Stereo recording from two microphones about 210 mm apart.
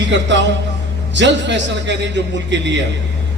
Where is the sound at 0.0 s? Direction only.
60° right (ahead or behind).